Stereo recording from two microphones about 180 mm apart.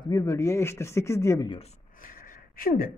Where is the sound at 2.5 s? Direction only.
55° left (ahead or behind).